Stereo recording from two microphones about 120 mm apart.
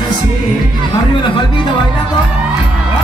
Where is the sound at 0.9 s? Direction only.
40° left (ahead or behind).